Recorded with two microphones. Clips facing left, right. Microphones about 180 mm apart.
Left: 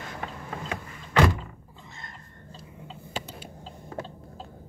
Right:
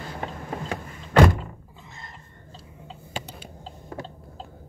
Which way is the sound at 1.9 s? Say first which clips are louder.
Right 1 dB; centre (ahead or behind).